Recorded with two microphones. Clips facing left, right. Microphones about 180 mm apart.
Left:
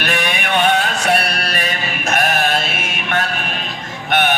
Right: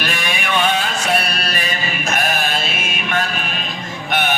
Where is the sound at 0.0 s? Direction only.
60° left (ahead or behind).